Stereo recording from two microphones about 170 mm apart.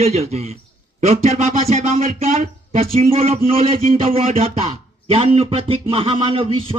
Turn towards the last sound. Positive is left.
turn(degrees=-35)  # may be behind; listen again after turning